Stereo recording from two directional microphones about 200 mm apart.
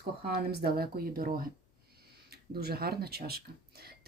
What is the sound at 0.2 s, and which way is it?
Speech, 50° right (ahead or behind).